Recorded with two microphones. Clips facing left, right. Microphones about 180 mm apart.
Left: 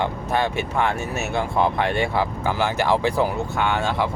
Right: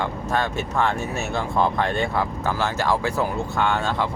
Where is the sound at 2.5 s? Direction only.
15° left (ahead or behind).